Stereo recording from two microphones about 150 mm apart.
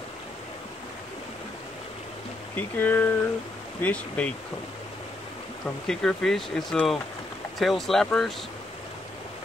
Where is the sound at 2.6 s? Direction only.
10° left (ahead or behind).